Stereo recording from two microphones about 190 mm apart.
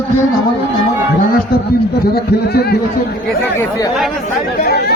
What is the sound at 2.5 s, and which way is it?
Speech, 60° left (ahead or behind).